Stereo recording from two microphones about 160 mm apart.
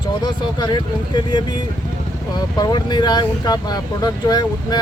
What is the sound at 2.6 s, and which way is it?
Speech, 25° left (ahead or behind).